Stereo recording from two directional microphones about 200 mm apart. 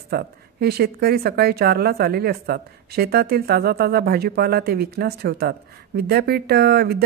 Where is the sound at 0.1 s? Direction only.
50° right (ahead or behind).